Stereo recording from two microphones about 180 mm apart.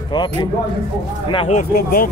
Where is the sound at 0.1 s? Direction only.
25° left (ahead or behind).